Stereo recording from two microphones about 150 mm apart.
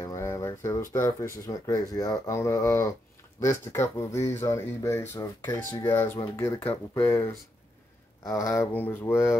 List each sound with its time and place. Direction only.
0.0 s speech: 20° left (ahead or behind)